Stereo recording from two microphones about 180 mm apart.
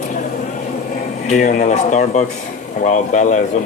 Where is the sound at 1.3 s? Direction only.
40° left (ahead or behind).